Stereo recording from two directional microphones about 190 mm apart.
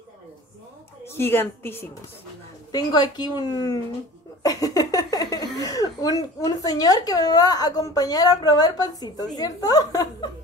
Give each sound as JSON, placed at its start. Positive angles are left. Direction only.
{"t": 1.0, "sound": "a woman's voice", "side_deg": 10}